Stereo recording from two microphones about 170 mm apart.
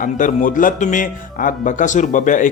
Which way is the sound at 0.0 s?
50° left (ahead or behind).